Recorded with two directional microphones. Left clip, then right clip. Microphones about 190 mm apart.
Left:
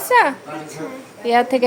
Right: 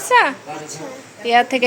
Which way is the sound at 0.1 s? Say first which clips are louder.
Even; 15° left (ahead or behind).